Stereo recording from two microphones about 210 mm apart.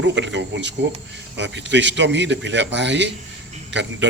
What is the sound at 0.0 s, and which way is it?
A man's voice, 60° right (ahead or behind).